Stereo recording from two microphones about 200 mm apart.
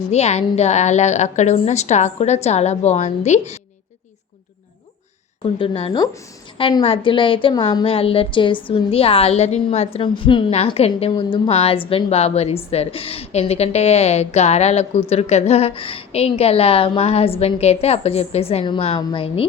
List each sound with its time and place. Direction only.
0.1 s a woman's voice: 35° left (ahead or behind)
5.4 s a woman's voice: 25° left (ahead or behind)